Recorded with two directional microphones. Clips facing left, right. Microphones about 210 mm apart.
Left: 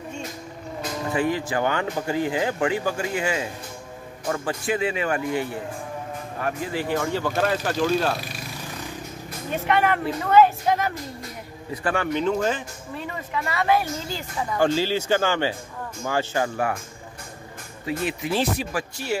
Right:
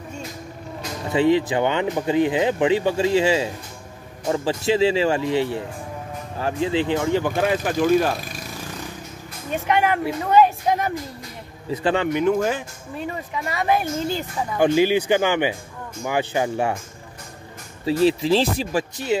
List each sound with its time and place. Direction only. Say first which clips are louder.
1.1 s speech: right 7 dB; 25° right (ahead or behind)
9.7 s speech: right 1 dB; 10° right (ahead or behind)
17.8 s speech: right 9 dB; 30° right (ahead or behind)